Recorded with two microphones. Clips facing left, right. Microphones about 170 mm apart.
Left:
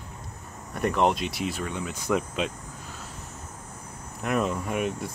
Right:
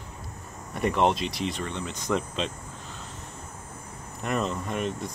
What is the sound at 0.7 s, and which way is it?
Speech, centre (ahead or behind).